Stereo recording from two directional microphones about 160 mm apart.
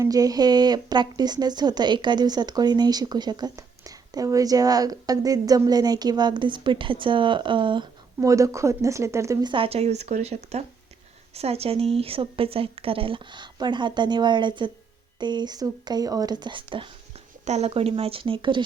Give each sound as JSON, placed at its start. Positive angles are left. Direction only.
{"t": 0.0, "sound": "a woman's voice", "side_deg": -20}
{"t": 9.5, "sound": "a woman's voice", "side_deg": -35}
{"t": 17.4, "sound": "a woman's voice", "side_deg": -45}